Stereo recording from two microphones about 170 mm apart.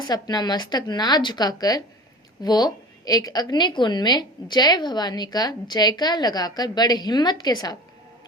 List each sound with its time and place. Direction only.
0.0 s a woman's voice: 25° left (ahead or behind)